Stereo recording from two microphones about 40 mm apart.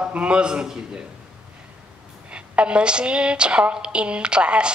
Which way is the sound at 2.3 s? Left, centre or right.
Right.